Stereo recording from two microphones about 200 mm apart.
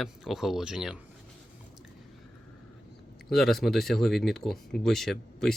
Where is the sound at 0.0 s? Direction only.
Centre (ahead or behind).